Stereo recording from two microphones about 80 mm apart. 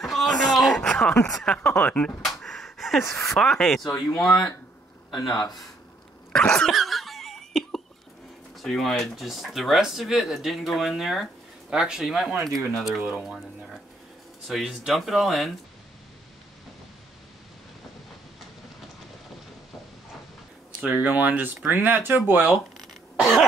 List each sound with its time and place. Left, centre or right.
0.0 s a sound: centre
1.4 s speech: centre
2.8 s a sound: centre
3.3 s speech: centre
5.1 s speech: left
6.3 s cough: centre
8.5 s speech: centre
14.5 s speech: centre
20.8 s speech: centre
22.5 s throat clearing: centre